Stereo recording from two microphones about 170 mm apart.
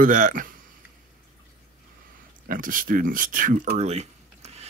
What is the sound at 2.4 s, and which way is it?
Speech, 55° right (ahead or behind).